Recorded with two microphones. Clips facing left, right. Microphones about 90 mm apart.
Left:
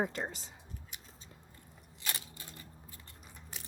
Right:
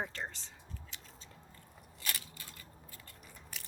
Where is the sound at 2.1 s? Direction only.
25° left (ahead or behind).